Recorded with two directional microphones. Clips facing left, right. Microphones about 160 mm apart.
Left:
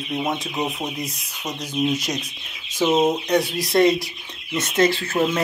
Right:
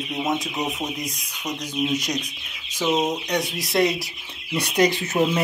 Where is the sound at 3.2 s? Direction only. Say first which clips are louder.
Left 5 dB; centre (ahead or behind).